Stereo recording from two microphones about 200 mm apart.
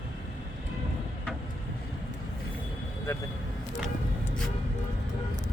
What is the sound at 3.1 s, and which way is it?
Speech, 15° left (ahead or behind).